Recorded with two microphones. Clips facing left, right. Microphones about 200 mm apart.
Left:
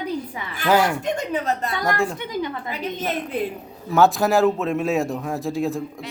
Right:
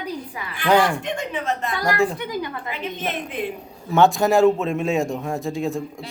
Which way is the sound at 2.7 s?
40° left (ahead or behind).